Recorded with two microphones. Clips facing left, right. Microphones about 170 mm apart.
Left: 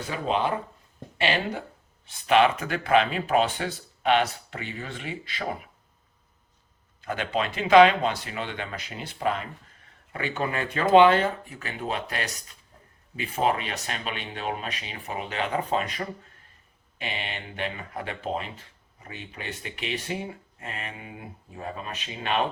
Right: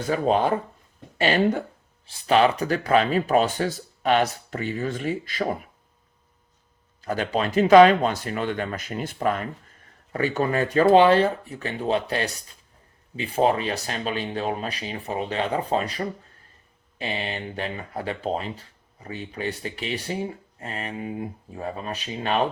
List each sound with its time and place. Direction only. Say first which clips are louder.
0.1 s speech: right 5 dB; 40° right (ahead or behind)
7.0 s speech: right 3 dB; 40° right (ahead or behind)
17.0 s speech: right 5 dB; 35° right (ahead or behind)